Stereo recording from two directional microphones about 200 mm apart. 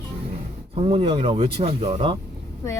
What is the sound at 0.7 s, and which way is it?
Speech, 30° right (ahead or behind).